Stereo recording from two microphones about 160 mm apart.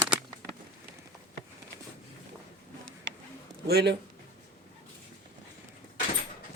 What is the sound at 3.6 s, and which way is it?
Speech, 90° right.